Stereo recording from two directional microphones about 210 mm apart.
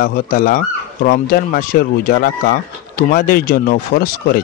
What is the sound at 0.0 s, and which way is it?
Speech, 45° left (ahead or behind).